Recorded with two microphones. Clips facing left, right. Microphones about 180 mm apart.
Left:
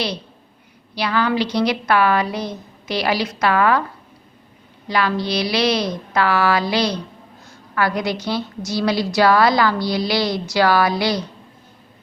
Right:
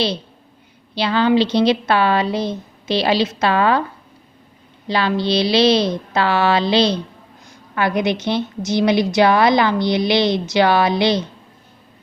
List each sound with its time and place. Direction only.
0.9 s a woman's voice: 25° right (ahead or behind)
4.9 s a woman's voice: 25° right (ahead or behind)